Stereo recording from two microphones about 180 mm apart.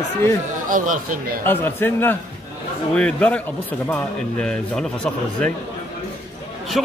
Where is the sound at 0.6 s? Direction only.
45° right (ahead or behind).